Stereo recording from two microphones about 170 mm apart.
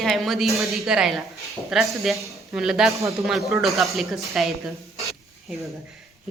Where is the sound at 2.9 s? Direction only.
15° right (ahead or behind).